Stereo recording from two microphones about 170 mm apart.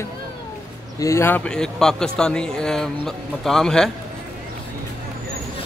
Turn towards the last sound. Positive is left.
turn(degrees=5)  # may be behind; listen again after turning